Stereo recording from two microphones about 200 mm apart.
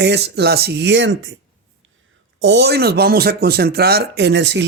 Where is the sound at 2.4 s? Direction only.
55° right (ahead or behind).